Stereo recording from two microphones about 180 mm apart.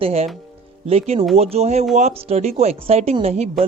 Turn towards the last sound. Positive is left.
turn(degrees=-35)  # may be behind; listen again after turning